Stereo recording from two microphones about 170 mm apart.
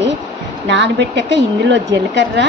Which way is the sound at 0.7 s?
90° right.